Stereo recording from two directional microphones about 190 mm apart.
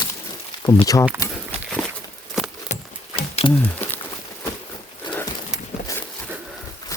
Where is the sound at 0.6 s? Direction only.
20° left (ahead or behind).